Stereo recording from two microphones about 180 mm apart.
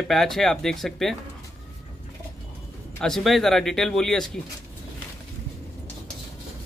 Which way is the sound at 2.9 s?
5° left (ahead or behind).